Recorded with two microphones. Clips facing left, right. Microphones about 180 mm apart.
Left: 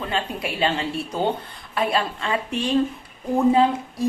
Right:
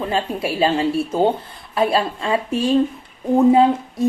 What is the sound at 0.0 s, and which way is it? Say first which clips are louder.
A woman's voice: right 5 dB; 30° right (ahead or behind).